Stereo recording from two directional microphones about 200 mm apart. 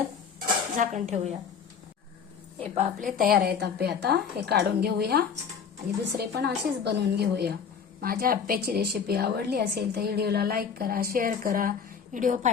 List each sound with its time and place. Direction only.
0.3 s dishes: 40° right (ahead or behind)
2.6 s a woman's voice: 35° right (ahead or behind)